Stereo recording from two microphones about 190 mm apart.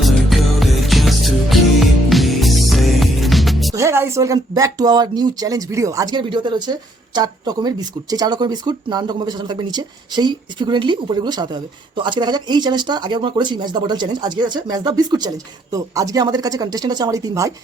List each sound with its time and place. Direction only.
0.0 s music: centre (ahead or behind)
3.8 s speech: 15° right (ahead or behind)